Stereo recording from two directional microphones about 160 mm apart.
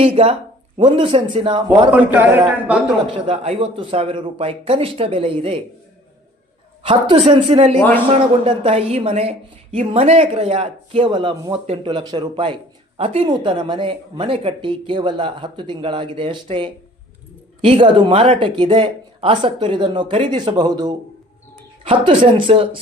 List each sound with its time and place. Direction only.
0.0 s speech: 35° right (ahead or behind)
2.6 s speech: 5° right (ahead or behind)
3.2 s speech: 35° right (ahead or behind)
6.8 s speech: 35° right (ahead or behind)
7.8 s a man's voice: 10° left (ahead or behind)
8.4 s speech: 40° right (ahead or behind)